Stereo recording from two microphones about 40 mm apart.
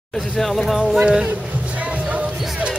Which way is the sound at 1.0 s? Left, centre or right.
Right.